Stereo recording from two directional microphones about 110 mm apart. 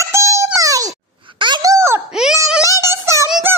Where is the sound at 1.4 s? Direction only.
45° right (ahead or behind).